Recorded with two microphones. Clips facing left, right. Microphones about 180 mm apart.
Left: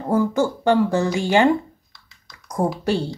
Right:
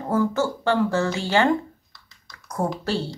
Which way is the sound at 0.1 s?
15° left (ahead or behind).